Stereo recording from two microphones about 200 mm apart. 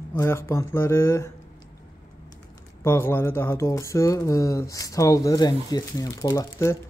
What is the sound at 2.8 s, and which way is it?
Speech, 10° left (ahead or behind).